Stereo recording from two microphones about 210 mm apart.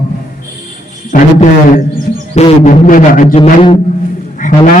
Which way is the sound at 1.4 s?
40° left (ahead or behind).